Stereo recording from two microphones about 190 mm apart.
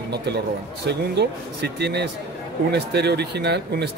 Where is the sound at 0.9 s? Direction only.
60° right (ahead or behind).